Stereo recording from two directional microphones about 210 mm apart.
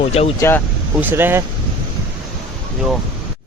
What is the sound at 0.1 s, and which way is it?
Speech, 30° left (ahead or behind).